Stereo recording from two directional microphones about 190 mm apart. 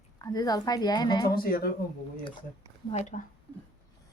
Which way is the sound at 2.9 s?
35° left (ahead or behind).